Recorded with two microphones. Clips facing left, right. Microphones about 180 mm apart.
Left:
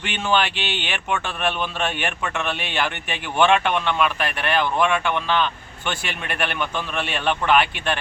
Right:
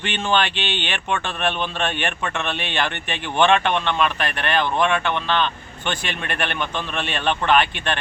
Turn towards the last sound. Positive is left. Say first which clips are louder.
# even
turn(degrees=10)  # may be behind; listen again after turning